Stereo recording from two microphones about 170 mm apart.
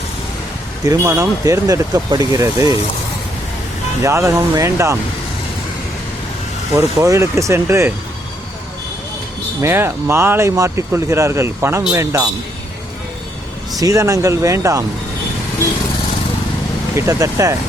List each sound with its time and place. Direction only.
0.9 s speech: 20° right (ahead or behind)
4.0 s speech: 15° right (ahead or behind)
6.7 s speech: 20° right (ahead or behind)
9.6 s speech: 15° right (ahead or behind)
13.7 s speech: 20° right (ahead or behind)
16.9 s speech: 15° right (ahead or behind)